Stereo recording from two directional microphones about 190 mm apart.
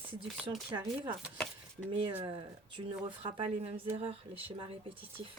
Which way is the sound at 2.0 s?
25° right (ahead or behind).